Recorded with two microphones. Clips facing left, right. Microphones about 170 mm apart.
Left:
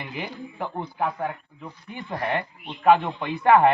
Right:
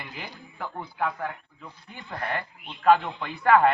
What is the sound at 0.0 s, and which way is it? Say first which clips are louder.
Speech: left 7 dB; 20° left (ahead or behind).